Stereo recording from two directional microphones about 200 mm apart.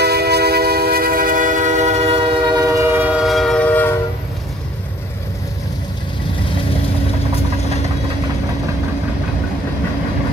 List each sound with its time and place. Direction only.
0.0 s music: 55° right (ahead or behind); by 4.0 s 10° left (ahead or behind)